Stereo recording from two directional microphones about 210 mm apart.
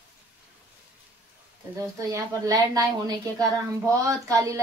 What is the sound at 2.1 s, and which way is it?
Speech, 15° right (ahead or behind).